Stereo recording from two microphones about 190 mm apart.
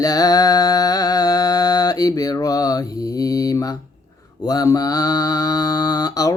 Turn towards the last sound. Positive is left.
turn(degrees=20)  # may be behind; listen again after turning